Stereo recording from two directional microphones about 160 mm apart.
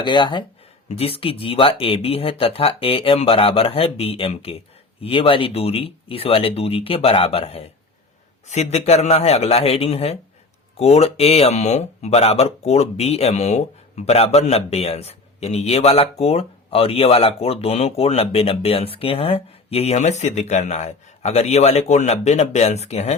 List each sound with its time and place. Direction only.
0.0 s speech: 30° left (ahead or behind)